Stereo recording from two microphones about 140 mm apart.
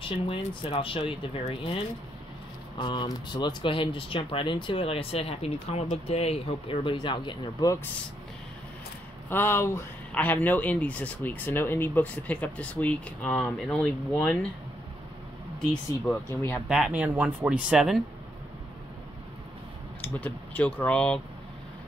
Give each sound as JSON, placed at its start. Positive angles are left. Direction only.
{"t": 0.1, "sound": "speech", "side_deg": 40}
{"t": 2.8, "sound": "speech", "side_deg": 35}
{"t": 9.3, "sound": "speech", "side_deg": 15}
{"t": 16.1, "sound": "speech", "side_deg": 20}
{"t": 16.6, "sound": "speech", "side_deg": -5}
{"t": 20.0, "sound": "speech", "side_deg": 10}